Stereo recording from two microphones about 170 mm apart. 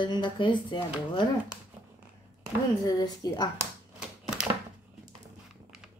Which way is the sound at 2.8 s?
20° left (ahead or behind).